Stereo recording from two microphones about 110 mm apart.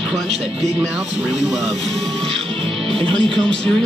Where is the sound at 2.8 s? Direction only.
55° right (ahead or behind).